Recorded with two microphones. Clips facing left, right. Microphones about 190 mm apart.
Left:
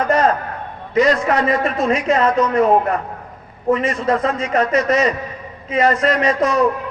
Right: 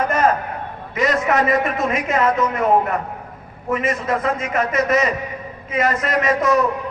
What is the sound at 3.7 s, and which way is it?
A man's voice, 30° left (ahead or behind).